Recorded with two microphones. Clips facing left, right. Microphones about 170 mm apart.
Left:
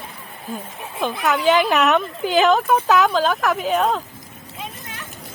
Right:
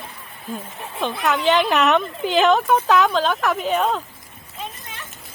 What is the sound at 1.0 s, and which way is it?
A woman's voice, 5° left (ahead or behind).